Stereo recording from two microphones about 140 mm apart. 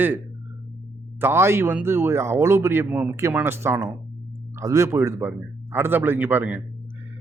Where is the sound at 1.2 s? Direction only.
20° right (ahead or behind).